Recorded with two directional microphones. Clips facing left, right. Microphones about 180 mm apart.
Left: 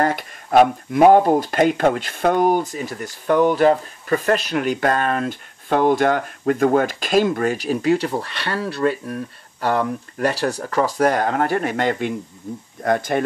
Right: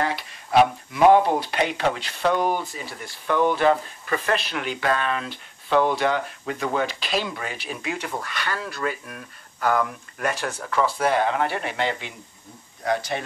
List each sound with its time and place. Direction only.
0.0 s speech: 50° left (ahead or behind)